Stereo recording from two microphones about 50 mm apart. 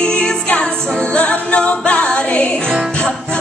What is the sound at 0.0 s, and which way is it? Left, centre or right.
Music, left.